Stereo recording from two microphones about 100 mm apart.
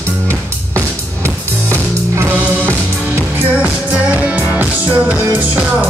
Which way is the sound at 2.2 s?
20° right (ahead or behind).